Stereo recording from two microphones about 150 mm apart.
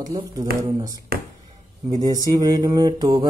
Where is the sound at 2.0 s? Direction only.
25° right (ahead or behind).